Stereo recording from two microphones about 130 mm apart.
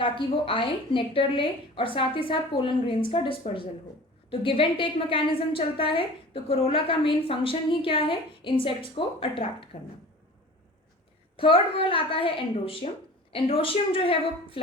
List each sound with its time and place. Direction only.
0.0 s a woman's voice: 40° left (ahead or behind)
11.3 s a woman's voice: 45° left (ahead or behind)